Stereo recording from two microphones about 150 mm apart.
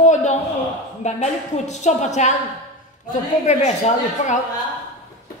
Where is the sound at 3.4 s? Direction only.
50° left (ahead or behind).